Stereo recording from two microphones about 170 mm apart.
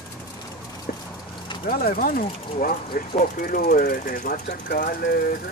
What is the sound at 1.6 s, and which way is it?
Speech, 55° left (ahead or behind).